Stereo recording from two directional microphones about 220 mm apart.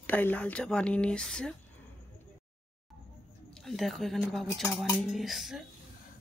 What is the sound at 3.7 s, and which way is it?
A woman's voice, centre (ahead or behind).